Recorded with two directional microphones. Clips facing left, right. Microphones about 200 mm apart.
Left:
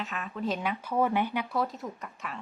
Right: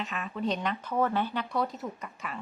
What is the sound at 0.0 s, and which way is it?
Speech, centre (ahead or behind).